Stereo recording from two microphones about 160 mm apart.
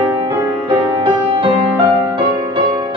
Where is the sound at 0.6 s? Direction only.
30° right (ahead or behind).